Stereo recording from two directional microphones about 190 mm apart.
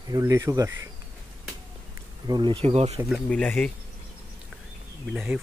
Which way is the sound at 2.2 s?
25° right (ahead or behind).